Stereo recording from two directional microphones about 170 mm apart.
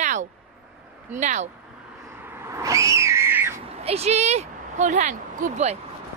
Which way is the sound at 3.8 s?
40° right (ahead or behind).